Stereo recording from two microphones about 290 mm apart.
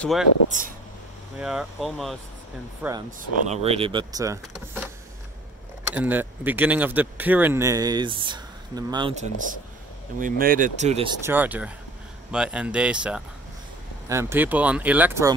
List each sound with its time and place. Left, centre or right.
0.0 s speech: centre
0.5 s speech: right
1.4 s speech: centre
3.1 s speech: right
5.9 s speech: centre; by 11.1 s right
11.2 s speech: centre